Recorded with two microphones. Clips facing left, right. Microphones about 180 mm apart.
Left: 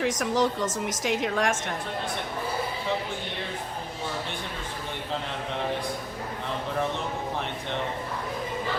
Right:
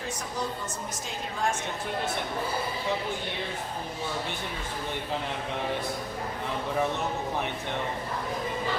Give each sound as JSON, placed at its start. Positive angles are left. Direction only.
{"t": 0.0, "sound": "a woman's voice", "side_deg": 90}